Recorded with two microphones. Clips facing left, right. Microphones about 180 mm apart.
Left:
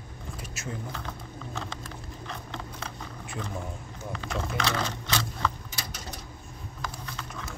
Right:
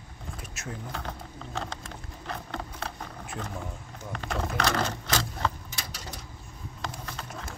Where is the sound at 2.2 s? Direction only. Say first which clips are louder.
Right 4 dB; 55° right (ahead or behind).